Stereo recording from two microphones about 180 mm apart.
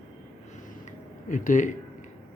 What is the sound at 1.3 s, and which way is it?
Speech, 45° left (ahead or behind).